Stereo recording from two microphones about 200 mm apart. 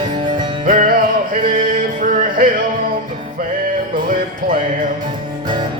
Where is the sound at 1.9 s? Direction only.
45° right (ahead or behind).